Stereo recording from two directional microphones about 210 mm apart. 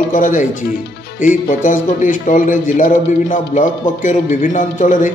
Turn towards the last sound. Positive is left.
turn(degrees=40)  # may be behind; listen again after turning